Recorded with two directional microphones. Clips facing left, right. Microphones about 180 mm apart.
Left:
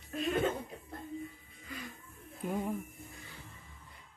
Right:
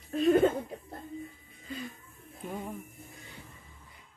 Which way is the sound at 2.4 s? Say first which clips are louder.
Left 3 dB; 10° left (ahead or behind).